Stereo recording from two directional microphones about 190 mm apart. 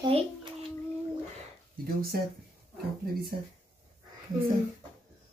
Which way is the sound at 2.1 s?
55° right (ahead or behind).